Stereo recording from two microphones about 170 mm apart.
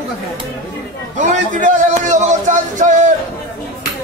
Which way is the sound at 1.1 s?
45° right (ahead or behind).